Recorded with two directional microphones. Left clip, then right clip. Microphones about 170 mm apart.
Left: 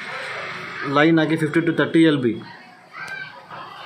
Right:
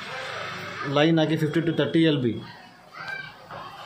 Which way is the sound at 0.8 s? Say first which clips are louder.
Left 5 dB; 5° right (ahead or behind).